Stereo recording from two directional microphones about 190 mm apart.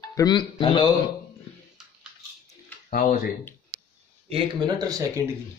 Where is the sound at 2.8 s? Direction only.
50° left (ahead or behind).